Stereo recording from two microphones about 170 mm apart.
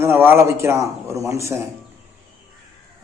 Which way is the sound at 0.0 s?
15° right (ahead or behind).